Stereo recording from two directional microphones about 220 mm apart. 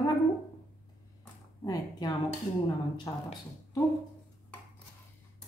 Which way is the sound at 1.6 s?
15° left (ahead or behind).